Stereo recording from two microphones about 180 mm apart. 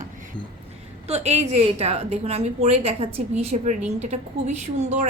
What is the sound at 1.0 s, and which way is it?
A woman's voice, 35° right (ahead or behind).